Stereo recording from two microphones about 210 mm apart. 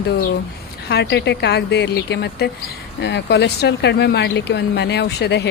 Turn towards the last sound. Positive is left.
turn(degrees=55)  # may be behind; listen again after turning